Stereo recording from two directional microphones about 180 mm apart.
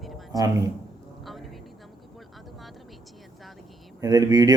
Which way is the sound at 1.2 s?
Centre (ahead or behind).